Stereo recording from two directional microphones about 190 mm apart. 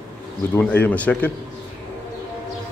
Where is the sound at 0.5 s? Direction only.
10° left (ahead or behind).